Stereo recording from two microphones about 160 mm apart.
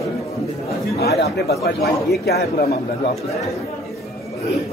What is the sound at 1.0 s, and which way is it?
Speech, 85° left.